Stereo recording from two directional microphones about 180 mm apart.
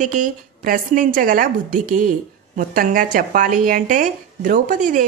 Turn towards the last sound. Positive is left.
turn(degrees=-45)  # may be behind; listen again after turning